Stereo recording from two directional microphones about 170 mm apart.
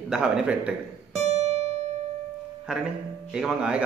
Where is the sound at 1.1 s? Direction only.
40° right (ahead or behind).